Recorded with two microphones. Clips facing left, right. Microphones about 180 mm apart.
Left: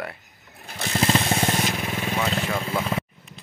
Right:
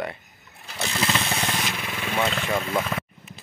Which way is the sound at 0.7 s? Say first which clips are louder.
Left 3 dB; 40° left (ahead or behind).